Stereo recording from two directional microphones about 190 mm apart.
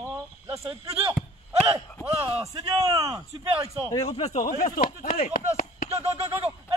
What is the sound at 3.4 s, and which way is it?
Speech, 30° right (ahead or behind).